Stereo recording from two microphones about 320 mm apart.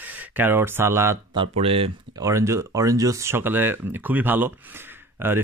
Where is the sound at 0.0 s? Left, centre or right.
Centre.